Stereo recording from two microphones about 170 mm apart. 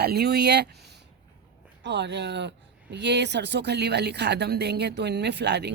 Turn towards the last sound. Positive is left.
turn(degrees=-80)